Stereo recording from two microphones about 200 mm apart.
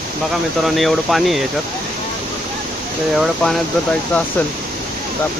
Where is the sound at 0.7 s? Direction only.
Centre (ahead or behind).